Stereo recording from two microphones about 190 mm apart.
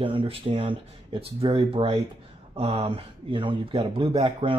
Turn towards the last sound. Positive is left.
turn(degrees=-30)  # may be behind; listen again after turning